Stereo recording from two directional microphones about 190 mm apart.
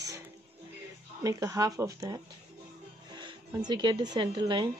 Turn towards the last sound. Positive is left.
turn(degrees=-25)  # may be behind; listen again after turning